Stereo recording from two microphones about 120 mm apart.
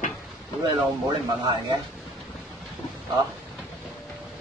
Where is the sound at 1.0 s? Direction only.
35° right (ahead or behind).